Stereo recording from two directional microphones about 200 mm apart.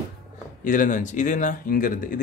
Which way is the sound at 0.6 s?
40° left (ahead or behind).